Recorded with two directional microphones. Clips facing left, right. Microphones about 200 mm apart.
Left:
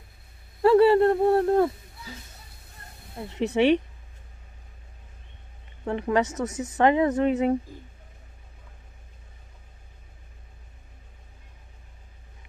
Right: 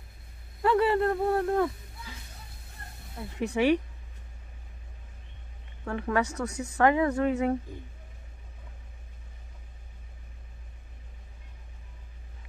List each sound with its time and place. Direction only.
0.6 s speech: 30° left (ahead or behind)
3.2 s speech: 20° left (ahead or behind)
5.9 s speech: 20° left (ahead or behind)